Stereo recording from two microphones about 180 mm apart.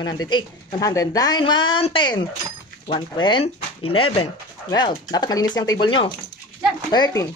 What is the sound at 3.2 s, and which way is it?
A woman's voice, 30° left (ahead or behind).